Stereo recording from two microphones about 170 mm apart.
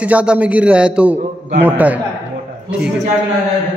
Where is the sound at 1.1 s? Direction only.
35° right (ahead or behind).